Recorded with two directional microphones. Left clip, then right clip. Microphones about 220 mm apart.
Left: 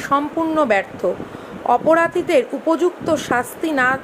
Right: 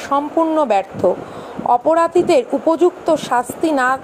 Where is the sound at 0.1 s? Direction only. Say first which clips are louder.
Right 3 dB; 10° right (ahead or behind).